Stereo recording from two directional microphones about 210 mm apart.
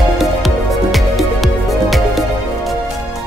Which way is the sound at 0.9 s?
Centre (ahead or behind).